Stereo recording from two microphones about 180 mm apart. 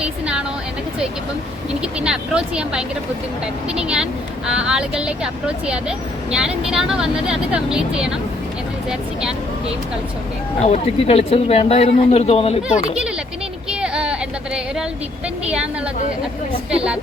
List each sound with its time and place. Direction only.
0.0 s a sound: 5° right (ahead or behind)
1.8 s speech: 5° right (ahead or behind)
10.6 s speech: 35° left (ahead or behind)
12.6 s speech: 5° right (ahead or behind)
13.7 s a sound: 5° right (ahead or behind)
15.4 s speech: 5° right (ahead or behind)
16.7 s speech: 5° right (ahead or behind)